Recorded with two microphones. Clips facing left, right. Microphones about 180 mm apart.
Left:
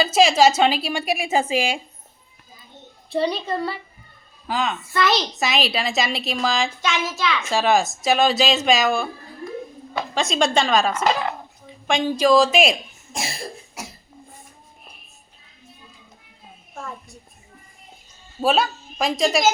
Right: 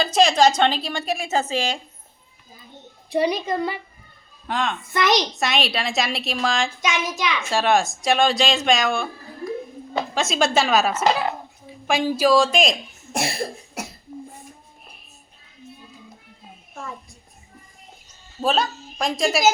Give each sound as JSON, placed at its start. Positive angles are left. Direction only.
{"t": 0.0, "sound": "a woman's voice", "side_deg": 5}
{"t": 3.1, "sound": "a child's voice", "side_deg": -15}
{"t": 4.4, "sound": "speech", "side_deg": 0}
{"t": 4.9, "sound": "a child's voice", "side_deg": -20}
{"t": 5.3, "sound": "speech", "side_deg": 0}
{"t": 6.8, "sound": "a child's voice", "side_deg": -15}
{"t": 7.4, "sound": "speech", "side_deg": 0}
{"t": 10.2, "sound": "a woman's voice", "side_deg": 0}
{"t": 13.1, "sound": "cough", "side_deg": -65}
{"t": 18.4, "sound": "a woman's voice", "side_deg": 5}